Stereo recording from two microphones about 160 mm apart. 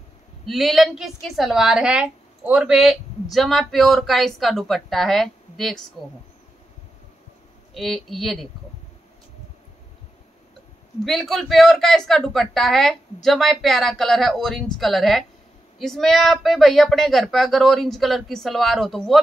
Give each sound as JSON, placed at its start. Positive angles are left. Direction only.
{"t": 0.5, "sound": "a woman's voice", "side_deg": 0}
{"t": 7.7, "sound": "a woman's voice", "side_deg": 0}
{"t": 11.1, "sound": "a woman's voice", "side_deg": 0}